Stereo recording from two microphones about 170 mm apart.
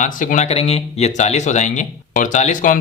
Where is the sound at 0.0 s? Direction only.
50° left (ahead or behind).